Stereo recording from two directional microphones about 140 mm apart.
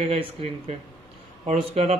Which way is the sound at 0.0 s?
45° right (ahead or behind).